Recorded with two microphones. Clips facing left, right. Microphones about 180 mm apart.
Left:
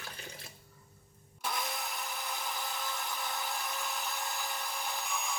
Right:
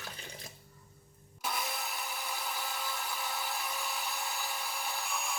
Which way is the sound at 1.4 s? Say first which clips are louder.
Even; 5° right (ahead or behind).